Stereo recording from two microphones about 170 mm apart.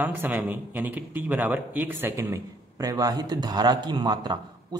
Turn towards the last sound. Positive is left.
turn(degrees=-25)  # may be behind; listen again after turning